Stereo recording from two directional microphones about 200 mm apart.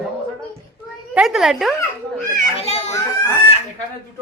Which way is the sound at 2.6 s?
30° left (ahead or behind).